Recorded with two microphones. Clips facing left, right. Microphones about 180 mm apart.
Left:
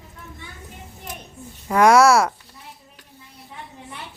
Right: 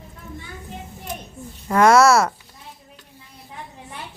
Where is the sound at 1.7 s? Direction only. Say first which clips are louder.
Even; 10° left (ahead or behind).